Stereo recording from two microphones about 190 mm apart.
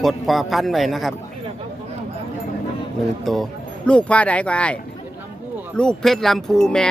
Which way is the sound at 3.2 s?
Centre (ahead or behind).